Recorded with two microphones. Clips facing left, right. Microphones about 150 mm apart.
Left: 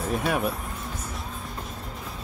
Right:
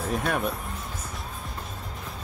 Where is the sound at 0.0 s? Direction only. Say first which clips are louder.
Left 1 dB; centre (ahead or behind).